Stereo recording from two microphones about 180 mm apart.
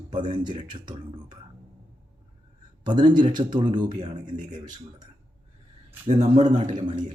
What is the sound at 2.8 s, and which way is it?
Speech, 25° right (ahead or behind).